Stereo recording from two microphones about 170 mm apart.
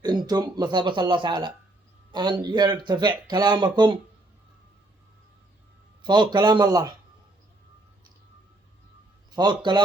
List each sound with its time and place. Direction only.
0.0 s speech: 25° right (ahead or behind)
6.0 s speech: 25° right (ahead or behind)
9.3 s speech: 25° right (ahead or behind)